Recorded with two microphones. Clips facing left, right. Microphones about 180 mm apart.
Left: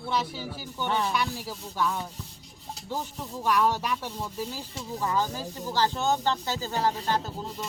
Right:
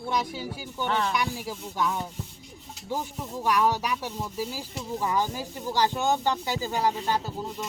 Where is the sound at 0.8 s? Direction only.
15° left (ahead or behind).